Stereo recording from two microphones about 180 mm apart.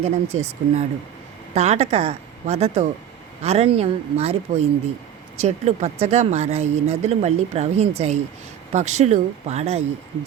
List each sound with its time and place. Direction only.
0.0 s speech: 35° right (ahead or behind)